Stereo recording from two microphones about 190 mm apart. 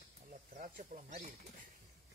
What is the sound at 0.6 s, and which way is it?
Speech, 40° right (ahead or behind).